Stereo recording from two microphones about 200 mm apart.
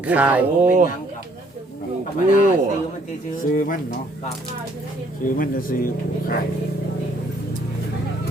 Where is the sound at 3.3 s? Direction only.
45° left (ahead or behind).